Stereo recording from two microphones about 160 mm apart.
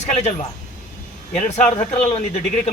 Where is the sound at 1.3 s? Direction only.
45° left (ahead or behind).